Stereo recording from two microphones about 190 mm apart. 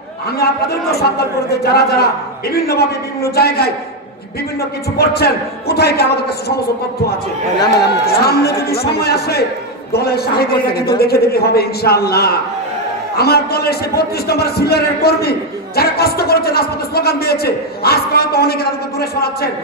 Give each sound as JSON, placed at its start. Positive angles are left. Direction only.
{"t": 0.4, "sound": "a man's voice", "side_deg": 55}
{"t": 7.8, "sound": "a man's voice", "side_deg": 55}